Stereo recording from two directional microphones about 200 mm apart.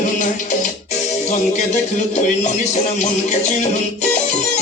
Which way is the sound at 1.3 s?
35° left (ahead or behind).